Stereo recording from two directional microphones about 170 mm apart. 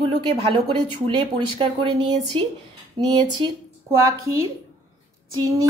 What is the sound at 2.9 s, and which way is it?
Speech, 25° right (ahead or behind).